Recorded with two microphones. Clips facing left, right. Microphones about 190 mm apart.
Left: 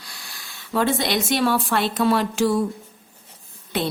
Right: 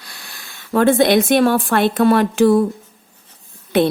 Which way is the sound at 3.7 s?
60° right (ahead or behind).